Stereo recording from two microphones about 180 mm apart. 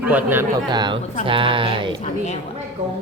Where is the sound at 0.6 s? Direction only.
25° right (ahead or behind).